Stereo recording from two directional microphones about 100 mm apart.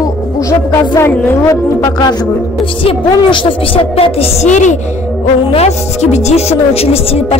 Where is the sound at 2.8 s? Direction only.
60° left (ahead or behind); by 4.5 s 80° left.